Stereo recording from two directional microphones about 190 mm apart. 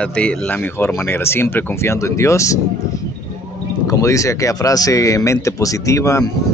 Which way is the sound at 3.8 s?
15° left (ahead or behind).